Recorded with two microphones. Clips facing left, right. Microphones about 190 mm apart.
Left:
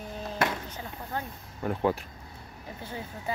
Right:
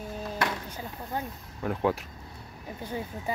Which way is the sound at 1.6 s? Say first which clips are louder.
Even; centre (ahead or behind).